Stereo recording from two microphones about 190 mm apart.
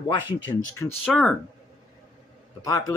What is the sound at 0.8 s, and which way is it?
Speech, 15° left (ahead or behind).